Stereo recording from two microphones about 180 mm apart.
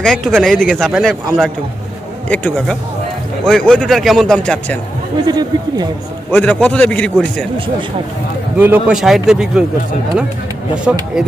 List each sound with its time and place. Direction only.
0.0 s a man's voice: 5° left (ahead or behind)
5.2 s speech: 25° right (ahead or behind)
6.3 s a man's voice: 10° left (ahead or behind)
8.5 s a man's voice: 10° right (ahead or behind)